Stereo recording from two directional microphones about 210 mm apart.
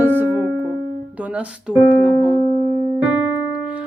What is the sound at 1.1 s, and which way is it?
Music, 5° right (ahead or behind).